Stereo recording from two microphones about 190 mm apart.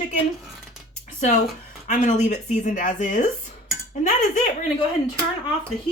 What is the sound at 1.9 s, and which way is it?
Speech, 40° left (ahead or behind).